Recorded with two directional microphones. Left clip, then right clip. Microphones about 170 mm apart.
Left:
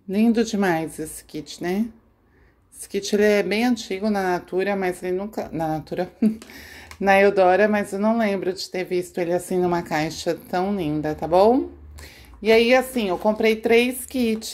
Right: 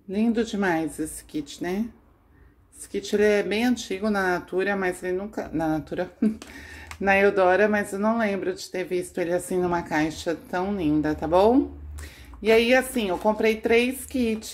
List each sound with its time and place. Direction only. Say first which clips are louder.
0.1 s speech: left 4 dB; 35° left (ahead or behind)
2.9 s speech: left 2 dB; 35° left (ahead or behind)